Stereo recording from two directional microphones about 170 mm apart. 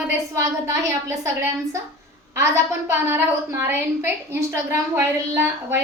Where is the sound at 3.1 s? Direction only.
15° right (ahead or behind).